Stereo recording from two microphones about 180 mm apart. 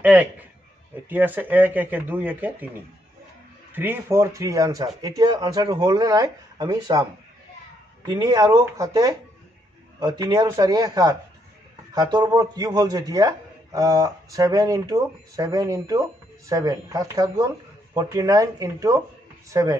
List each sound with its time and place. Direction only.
0.0 s a sound: 10° right (ahead or behind)
1.0 s a man's voice: 10° right (ahead or behind)
3.7 s a man's voice: 10° right (ahead or behind)